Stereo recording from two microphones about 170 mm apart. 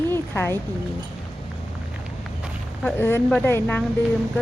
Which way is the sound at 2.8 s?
15° left (ahead or behind).